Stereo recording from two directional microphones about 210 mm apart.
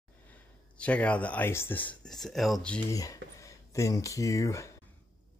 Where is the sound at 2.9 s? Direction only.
15° left (ahead or behind).